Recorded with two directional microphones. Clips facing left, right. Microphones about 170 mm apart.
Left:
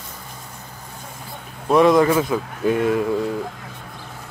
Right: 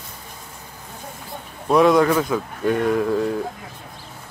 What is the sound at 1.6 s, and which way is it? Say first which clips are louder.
Speech: left 1 dB; centre (ahead or behind).